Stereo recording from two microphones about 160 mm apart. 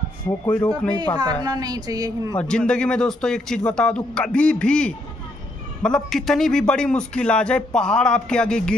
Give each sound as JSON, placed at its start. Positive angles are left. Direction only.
{"t": 0.5, "sound": "speech", "side_deg": 10}
{"t": 1.4, "sound": "a woman's voice", "side_deg": -25}
{"t": 2.3, "sound": "a man's voice", "side_deg": 5}